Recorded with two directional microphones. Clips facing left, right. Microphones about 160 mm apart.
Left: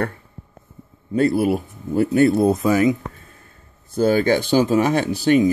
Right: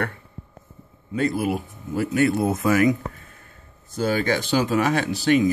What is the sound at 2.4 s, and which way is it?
Speech, 20° left (ahead or behind).